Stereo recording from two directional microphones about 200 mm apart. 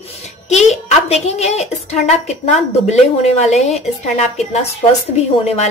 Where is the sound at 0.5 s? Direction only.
35° left (ahead or behind).